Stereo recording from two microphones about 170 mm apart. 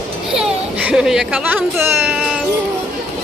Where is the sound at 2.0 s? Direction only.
Centre (ahead or behind).